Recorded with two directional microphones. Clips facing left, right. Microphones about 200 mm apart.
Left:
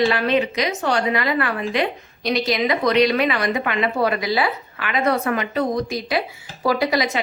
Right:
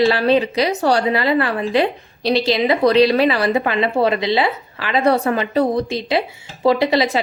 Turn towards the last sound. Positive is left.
turn(degrees=-30)  # may be behind; listen again after turning